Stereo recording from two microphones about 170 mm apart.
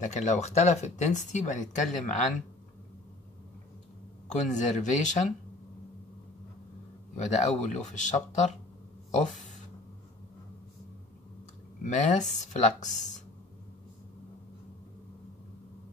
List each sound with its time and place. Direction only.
0.0 s speech: 45° left (ahead or behind)
4.3 s speech: 45° left (ahead or behind)
7.2 s speech: 45° left (ahead or behind)
11.8 s speech: 45° left (ahead or behind)